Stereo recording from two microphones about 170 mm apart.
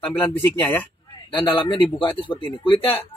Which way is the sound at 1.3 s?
30° left (ahead or behind).